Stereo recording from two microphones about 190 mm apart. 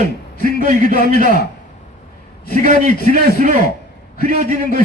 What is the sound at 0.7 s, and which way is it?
Speech, 45° right (ahead or behind).